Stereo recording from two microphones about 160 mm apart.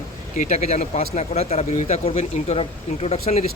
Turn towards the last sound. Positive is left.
turn(degrees=40)  # may be behind; listen again after turning